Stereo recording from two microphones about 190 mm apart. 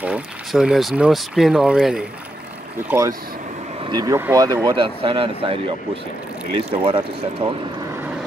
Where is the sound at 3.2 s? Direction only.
45° right (ahead or behind); by 4.6 s 20° right (ahead or behind).